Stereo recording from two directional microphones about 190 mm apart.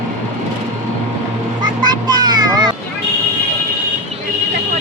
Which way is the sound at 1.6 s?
20° right (ahead or behind).